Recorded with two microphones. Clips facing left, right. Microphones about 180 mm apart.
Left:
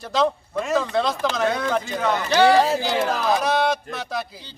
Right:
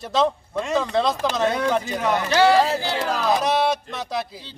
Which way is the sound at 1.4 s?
10° right (ahead or behind).